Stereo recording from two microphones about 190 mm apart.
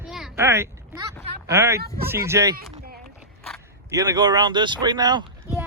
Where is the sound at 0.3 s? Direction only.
15° right (ahead or behind).